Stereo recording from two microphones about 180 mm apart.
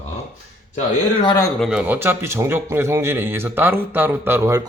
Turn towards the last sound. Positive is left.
turn(degrees=-15)  # may be behind; listen again after turning